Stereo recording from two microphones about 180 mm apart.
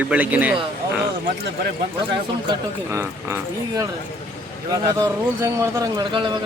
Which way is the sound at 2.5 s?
15° right (ahead or behind).